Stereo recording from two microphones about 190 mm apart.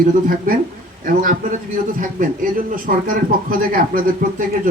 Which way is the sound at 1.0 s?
45° right (ahead or behind).